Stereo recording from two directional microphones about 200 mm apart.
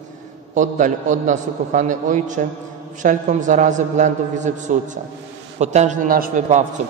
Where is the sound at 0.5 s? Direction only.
40° right (ahead or behind).